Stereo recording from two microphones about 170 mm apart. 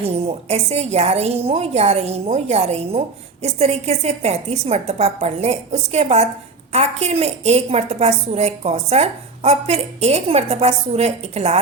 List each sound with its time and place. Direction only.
0.0 s a woman's voice: 35° right (ahead or behind)